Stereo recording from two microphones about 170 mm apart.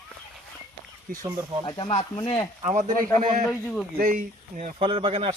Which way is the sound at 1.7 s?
25° left (ahead or behind).